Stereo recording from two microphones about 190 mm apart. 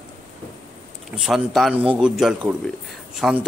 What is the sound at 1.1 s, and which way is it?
Speech, centre (ahead or behind).